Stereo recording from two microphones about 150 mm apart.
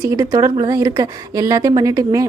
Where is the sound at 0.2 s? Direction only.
20° right (ahead or behind).